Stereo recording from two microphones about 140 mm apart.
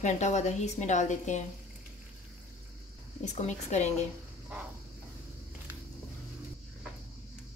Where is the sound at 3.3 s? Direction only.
55° left (ahead or behind).